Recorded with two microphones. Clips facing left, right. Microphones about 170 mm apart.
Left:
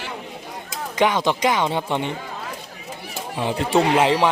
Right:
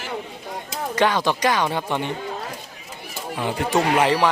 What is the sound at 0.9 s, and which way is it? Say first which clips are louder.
Speech: left 1 dB; 15° left (ahead or behind).